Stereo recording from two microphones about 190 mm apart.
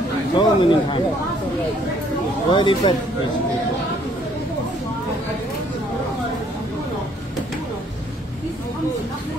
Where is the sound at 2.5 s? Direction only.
25° left (ahead or behind).